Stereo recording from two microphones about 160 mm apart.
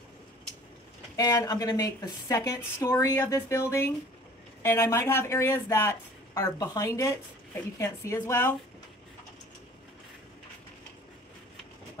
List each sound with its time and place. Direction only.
1.1 s a woman's voice: 20° left (ahead or behind)